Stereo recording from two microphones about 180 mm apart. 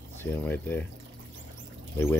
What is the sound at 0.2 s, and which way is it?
Speech, 10° left (ahead or behind).